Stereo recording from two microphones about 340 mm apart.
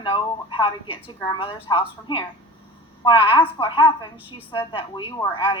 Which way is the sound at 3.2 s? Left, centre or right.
Centre.